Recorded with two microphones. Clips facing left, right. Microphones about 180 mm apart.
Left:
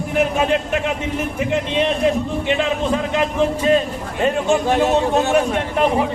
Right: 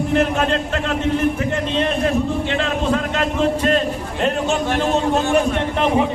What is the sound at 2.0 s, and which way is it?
A man's voice, 15° left (ahead or behind).